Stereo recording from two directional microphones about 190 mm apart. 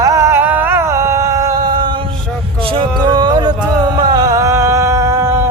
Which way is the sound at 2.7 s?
25° right (ahead or behind).